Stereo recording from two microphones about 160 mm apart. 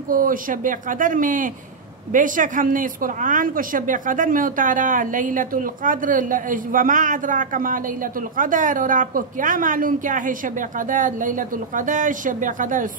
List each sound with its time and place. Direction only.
0.1 s speech: 60° right (ahead or behind)